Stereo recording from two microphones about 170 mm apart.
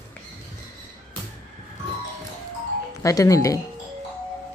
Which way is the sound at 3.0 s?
20° left (ahead or behind).